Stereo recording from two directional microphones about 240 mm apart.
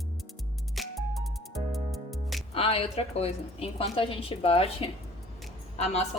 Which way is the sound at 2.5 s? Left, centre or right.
Left.